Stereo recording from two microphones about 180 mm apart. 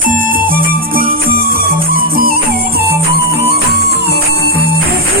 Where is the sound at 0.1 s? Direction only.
50° right (ahead or behind).